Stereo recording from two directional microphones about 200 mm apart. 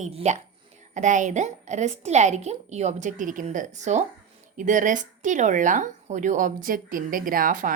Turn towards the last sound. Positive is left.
turn(degrees=-40)  # may be behind; listen again after turning